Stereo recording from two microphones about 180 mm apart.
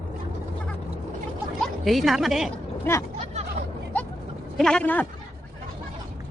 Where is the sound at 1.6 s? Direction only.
Centre (ahead or behind).